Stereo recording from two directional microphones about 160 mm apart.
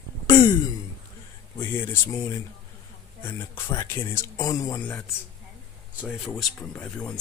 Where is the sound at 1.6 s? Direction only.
15° left (ahead or behind).